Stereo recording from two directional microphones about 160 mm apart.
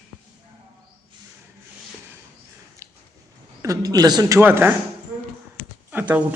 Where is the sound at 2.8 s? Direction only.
20° right (ahead or behind).